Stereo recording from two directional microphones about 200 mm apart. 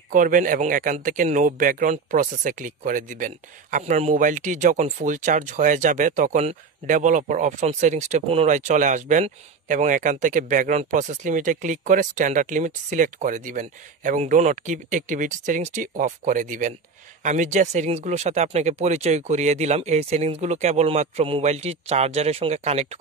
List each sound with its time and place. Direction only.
0.1 s speech: 40° right (ahead or behind)